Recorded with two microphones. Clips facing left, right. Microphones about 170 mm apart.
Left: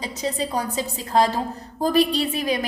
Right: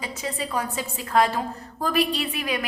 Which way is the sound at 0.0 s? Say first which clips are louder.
Left 4 dB; 35° left (ahead or behind).